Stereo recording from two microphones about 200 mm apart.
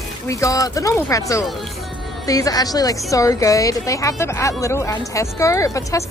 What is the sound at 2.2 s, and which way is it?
A woman's voice, 20° left (ahead or behind).